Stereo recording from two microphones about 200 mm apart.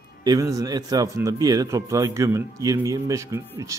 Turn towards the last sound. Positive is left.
turn(degrees=-15)  # may be behind; listen again after turning